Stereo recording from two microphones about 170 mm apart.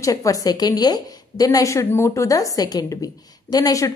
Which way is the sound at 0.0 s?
20° left (ahead or behind).